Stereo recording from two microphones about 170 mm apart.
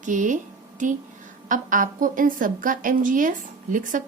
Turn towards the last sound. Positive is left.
turn(degrees=-50)  # may be behind; listen again after turning